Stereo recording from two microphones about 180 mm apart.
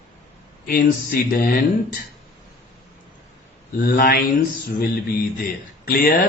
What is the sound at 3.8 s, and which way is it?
Speech, 55° left (ahead or behind).